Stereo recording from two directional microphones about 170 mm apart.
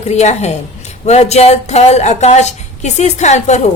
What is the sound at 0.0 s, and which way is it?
A woman's voice, 40° left (ahead or behind).